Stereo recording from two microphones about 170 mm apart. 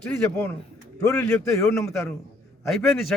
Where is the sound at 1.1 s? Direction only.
5° left (ahead or behind).